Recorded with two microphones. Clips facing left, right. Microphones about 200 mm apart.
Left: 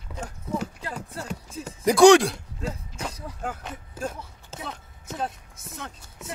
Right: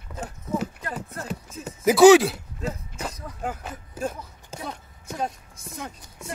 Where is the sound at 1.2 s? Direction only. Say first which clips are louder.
Right 1 dB; 5° right (ahead or behind).